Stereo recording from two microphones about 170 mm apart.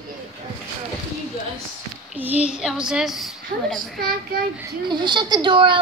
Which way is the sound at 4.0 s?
60° right (ahead or behind).